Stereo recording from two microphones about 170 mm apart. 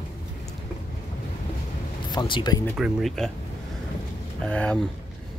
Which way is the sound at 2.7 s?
Centre (ahead or behind).